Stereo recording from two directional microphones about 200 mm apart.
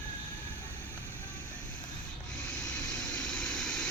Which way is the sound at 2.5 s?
5° left (ahead or behind).